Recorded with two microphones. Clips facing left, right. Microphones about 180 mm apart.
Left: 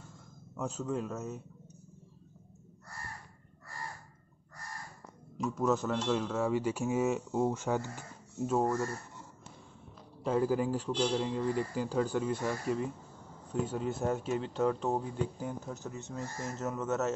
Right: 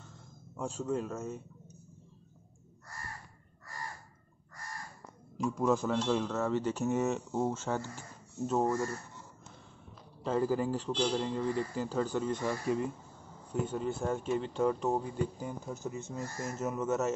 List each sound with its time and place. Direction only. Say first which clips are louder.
0.6 s speech: right 1 dB; centre (ahead or behind)
5.4 s a man's voice: right 1 dB; centre (ahead or behind)
8.5 s speech: even; centre (ahead or behind)
10.2 s a man's voice: left 1 dB; 10° left (ahead or behind)
14.6 s speech: even; 5° right (ahead or behind)